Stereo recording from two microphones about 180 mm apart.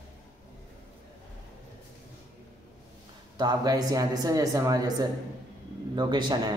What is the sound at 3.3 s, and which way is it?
Speech, 20° right (ahead or behind).